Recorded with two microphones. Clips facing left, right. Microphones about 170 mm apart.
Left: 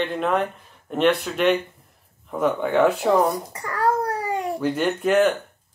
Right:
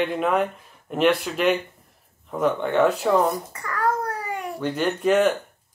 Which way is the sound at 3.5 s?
30° left (ahead or behind).